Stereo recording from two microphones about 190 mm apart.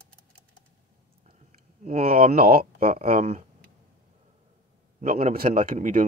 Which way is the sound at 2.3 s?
50° right (ahead or behind).